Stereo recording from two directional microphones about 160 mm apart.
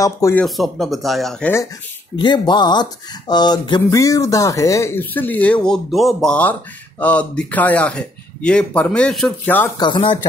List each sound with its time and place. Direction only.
0.0 s speech: 20° left (ahead or behind)
0.4 s speech: centre (ahead or behind)
2.1 s speech: 30° left (ahead or behind); by 9.7 s 5° left (ahead or behind)
9.8 s speech: 30° left (ahead or behind)